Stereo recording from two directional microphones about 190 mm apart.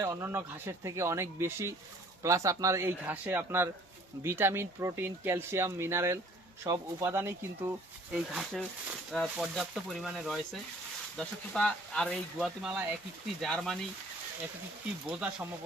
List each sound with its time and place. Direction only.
0.0 s speech: 15° right (ahead or behind)
8.1 s speech: centre (ahead or behind)